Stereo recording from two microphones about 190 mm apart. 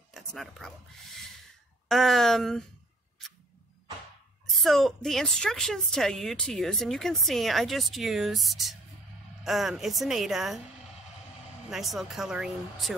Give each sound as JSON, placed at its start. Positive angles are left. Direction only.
{"t": 0.1, "sound": "speech", "side_deg": 0}
{"t": 1.9, "sound": "a woman's voice", "side_deg": 0}
{"t": 4.5, "sound": "a woman's voice", "side_deg": 0}
{"t": 11.7, "sound": "a woman's voice", "side_deg": 0}